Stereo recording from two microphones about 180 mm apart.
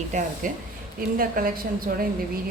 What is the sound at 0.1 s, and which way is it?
Speech, 45° right (ahead or behind).